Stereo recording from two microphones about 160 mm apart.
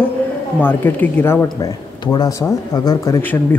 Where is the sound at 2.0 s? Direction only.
25° left (ahead or behind).